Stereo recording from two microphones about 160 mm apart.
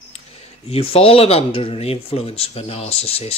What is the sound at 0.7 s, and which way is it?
Speech, 40° left (ahead or behind).